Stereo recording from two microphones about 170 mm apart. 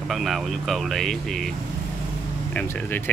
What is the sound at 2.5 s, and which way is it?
Speech, 10° left (ahead or behind).